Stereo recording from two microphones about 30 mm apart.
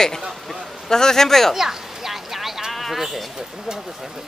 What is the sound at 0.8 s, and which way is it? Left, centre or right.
Speech, centre.